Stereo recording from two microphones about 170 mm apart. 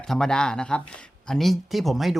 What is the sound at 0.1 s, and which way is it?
Speech, 5° left (ahead or behind).